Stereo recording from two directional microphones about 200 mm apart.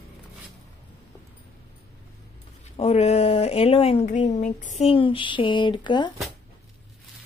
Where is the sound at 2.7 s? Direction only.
30° left (ahead or behind).